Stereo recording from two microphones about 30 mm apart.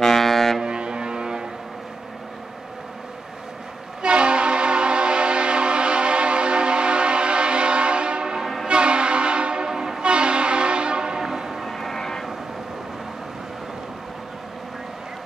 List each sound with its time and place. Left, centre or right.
0.0 s foghorn: centre
0.7 s foghorn: right
4.0 s train: right
8.6 s train horn: right
9.7 s train horn: centre
10.0 s train: right
11.1 s train: centre
11.6 s vehicle: centre